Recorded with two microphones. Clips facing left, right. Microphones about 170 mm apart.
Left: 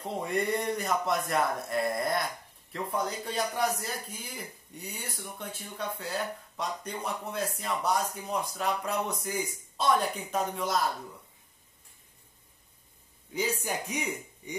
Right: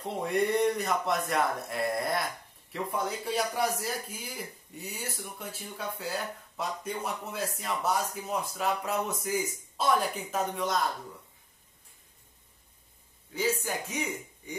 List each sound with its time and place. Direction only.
0.2 s speech: centre (ahead or behind)
13.3 s a man's voice: 15° left (ahead or behind)